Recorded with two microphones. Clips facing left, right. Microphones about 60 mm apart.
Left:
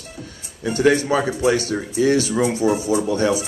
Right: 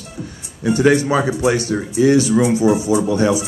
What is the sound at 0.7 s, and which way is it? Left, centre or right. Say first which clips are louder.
Speech: right 3 dB; right.